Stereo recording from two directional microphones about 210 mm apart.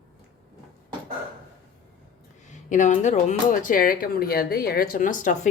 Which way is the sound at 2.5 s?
35° left (ahead or behind).